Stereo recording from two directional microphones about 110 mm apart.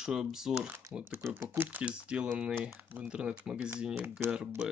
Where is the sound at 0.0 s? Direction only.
5° right (ahead or behind).